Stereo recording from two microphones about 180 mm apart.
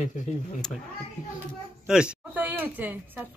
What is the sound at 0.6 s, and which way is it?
Speech, 5° left (ahead or behind).